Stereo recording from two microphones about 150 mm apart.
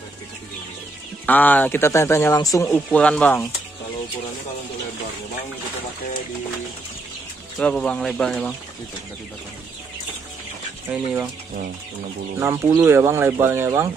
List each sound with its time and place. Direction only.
1.2 s speech: 10° left (ahead or behind)
2.7 s speech: 10° left (ahead or behind)
7.5 s speech: 5° left (ahead or behind)
12.4 s speech: 15° right (ahead or behind)